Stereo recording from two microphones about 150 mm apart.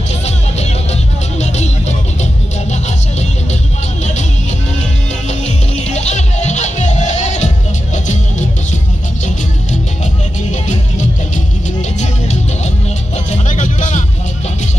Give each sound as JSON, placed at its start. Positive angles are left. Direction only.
{"t": 0.2, "sound": "music", "side_deg": 45}
{"t": 4.0, "sound": "music", "side_deg": 50}
{"t": 5.4, "sound": "music", "side_deg": 50}
{"t": 10.5, "sound": "music", "side_deg": 55}